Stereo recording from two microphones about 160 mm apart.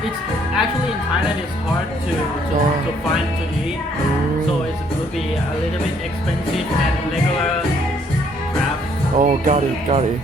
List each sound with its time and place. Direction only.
9.1 s speech: 50° right (ahead or behind)